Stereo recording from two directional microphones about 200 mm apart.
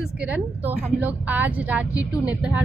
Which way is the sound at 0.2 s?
5° right (ahead or behind).